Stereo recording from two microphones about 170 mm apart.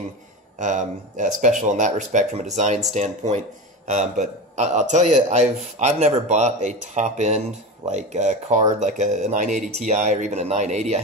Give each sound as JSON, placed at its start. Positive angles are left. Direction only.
{"t": 0.6, "sound": "a man's voice", "side_deg": -45}